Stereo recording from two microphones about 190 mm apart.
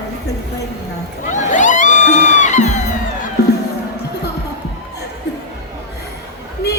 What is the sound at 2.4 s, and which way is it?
Music, 40° left (ahead or behind).